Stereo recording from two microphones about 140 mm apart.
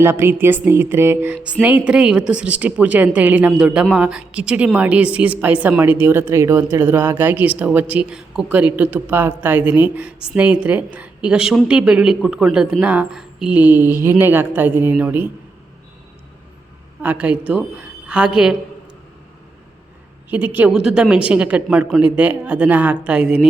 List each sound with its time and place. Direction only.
0.0 s a woman's voice: 15° right (ahead or behind)
17.0 s a woman's voice: 10° right (ahead or behind)
20.3 s a woman's voice: 10° right (ahead or behind)